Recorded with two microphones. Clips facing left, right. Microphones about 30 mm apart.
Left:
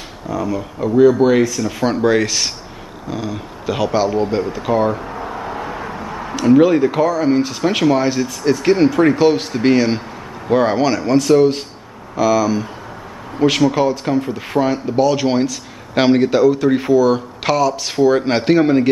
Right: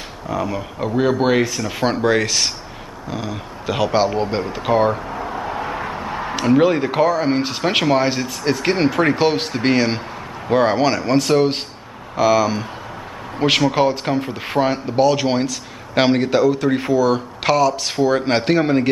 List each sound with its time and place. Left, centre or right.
0.3 s speech: centre
2.0 s speech: centre
3.9 s speech: right
4.9 s a sound: centre
5.5 s vehicle: right
6.2 s a sound: right
6.5 s speech: centre
15.0 s speech: centre